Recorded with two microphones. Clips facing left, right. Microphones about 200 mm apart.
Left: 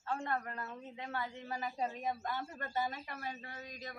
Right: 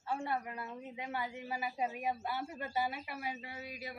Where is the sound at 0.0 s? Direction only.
10° right (ahead or behind).